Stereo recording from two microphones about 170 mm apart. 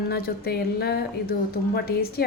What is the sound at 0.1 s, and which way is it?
A woman's voice, 65° left (ahead or behind).